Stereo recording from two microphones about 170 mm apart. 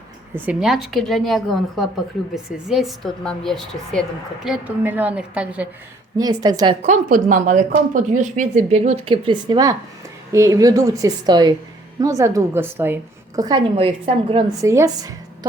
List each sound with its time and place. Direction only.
0.3 s a woman's voice: 5° right (ahead or behind)
4.4 s a woman's voice: 5° right (ahead or behind)
6.1 s a woman's voice: 25° right (ahead or behind)
6.8 s a woman's voice: 50° right (ahead or behind); by 14.4 s 30° right (ahead or behind)
14.6 s a woman's voice: 20° right (ahead or behind)